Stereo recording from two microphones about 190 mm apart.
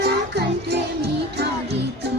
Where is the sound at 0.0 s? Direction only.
60° right (ahead or behind).